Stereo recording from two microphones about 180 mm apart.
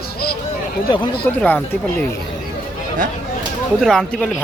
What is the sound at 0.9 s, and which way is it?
Speech, 25° left (ahead or behind).